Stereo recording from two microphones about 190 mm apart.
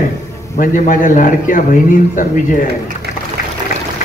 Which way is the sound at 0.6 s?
45° left (ahead or behind).